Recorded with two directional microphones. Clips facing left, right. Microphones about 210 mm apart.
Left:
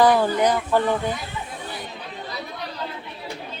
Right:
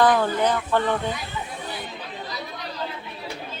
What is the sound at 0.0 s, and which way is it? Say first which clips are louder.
Speech: left 2 dB; 10° left (ahead or behind).